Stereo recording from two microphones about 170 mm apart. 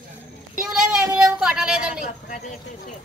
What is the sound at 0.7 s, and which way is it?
Speech, 5° right (ahead or behind).